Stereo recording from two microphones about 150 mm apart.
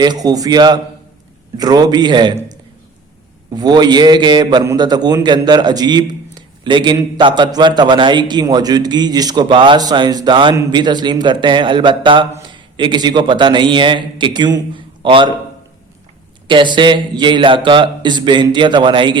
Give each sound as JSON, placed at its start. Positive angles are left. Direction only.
{"t": 0.0, "sound": "a man's voice", "side_deg": -25}
{"t": 3.5, "sound": "a man's voice", "side_deg": -30}
{"t": 16.5, "sound": "speech", "side_deg": -30}